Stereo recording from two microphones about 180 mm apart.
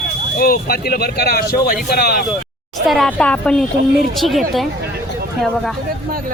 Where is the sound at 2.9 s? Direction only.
5° left (ahead or behind).